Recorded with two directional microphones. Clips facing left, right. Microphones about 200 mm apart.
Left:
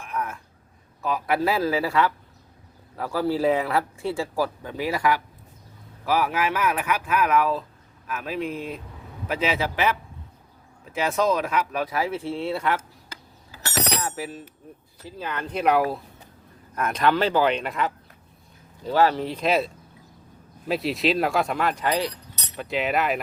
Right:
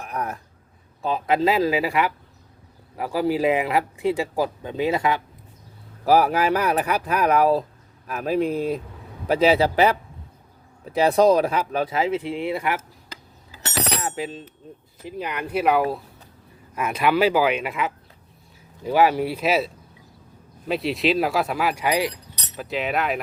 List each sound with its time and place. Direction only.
0.0 s speech: 40° right (ahead or behind)
1.0 s speech: 25° right (ahead or behind)
6.1 s speech: 40° right (ahead or behind); by 12.8 s 15° right (ahead or behind)
13.5 s bicycle bell: 20° right (ahead or behind)
15.0 s speech: 15° right (ahead or behind); by 23.2 s centre (ahead or behind)